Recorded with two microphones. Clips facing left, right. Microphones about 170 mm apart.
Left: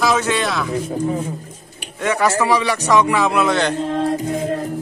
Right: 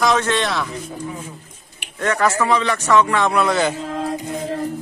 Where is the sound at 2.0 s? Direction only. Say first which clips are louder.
Left 1 dB; 10° left (ahead or behind).